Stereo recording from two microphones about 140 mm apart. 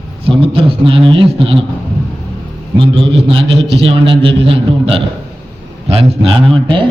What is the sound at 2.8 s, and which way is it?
A man's voice, 40° right (ahead or behind).